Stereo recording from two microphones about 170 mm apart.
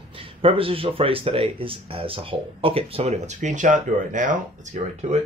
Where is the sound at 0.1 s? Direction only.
35° right (ahead or behind).